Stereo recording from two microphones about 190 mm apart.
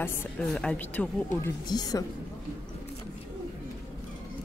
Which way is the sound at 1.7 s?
20° left (ahead or behind).